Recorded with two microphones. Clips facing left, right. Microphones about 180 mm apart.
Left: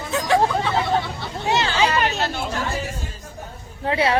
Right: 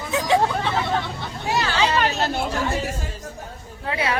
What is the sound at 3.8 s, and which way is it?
Speech, 30° left (ahead or behind).